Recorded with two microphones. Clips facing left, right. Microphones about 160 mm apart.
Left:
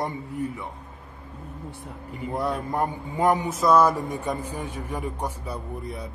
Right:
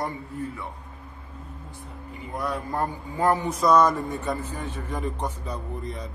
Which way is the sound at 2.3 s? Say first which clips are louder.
Left 2 dB; 25° left (ahead or behind).